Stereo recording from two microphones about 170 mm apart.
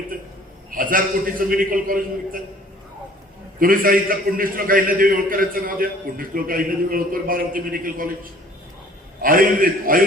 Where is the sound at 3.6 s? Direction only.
55° right (ahead or behind).